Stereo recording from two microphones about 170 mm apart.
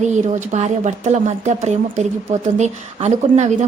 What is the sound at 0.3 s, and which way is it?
A woman's voice, 45° right (ahead or behind).